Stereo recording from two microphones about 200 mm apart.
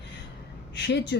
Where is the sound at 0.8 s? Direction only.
60° left (ahead or behind).